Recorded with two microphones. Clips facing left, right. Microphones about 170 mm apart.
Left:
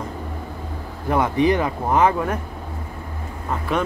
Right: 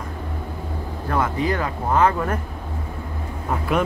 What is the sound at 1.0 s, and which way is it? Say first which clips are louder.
Speech: left 4 dB; 15° left (ahead or behind).